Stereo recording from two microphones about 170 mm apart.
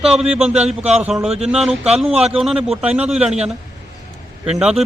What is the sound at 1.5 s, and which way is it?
Speech, 5° right (ahead or behind).